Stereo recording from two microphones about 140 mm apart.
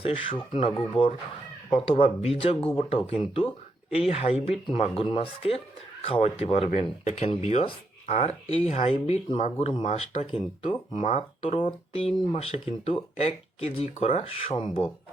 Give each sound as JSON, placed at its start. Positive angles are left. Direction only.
{"t": 0.0, "sound": "speech", "side_deg": 40}
{"t": 6.7, "sound": "speech", "side_deg": 60}